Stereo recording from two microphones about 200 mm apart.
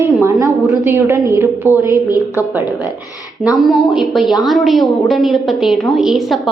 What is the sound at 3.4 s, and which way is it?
A woman's voice, centre (ahead or behind).